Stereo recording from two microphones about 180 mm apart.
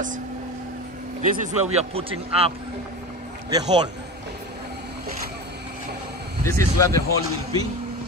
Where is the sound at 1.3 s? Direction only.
45° right (ahead or behind).